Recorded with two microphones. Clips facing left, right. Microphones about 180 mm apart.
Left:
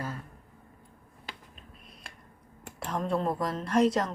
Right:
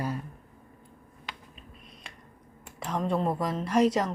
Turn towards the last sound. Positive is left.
turn(degrees=-5)  # may be behind; listen again after turning